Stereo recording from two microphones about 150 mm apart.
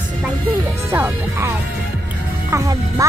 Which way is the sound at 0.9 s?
15° right (ahead or behind).